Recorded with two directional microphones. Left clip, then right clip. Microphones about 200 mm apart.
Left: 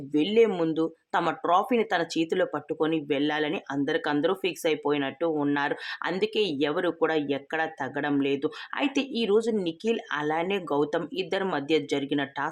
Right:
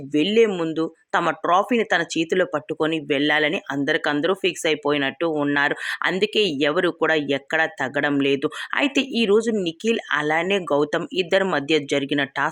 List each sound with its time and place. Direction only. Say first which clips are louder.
0.1 s speech: right 4 dB; 20° right (ahead or behind)